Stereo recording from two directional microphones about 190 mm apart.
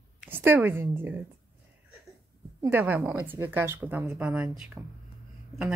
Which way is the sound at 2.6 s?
10° right (ahead or behind).